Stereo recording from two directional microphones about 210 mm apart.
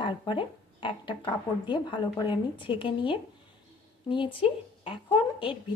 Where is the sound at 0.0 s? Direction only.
20° left (ahead or behind).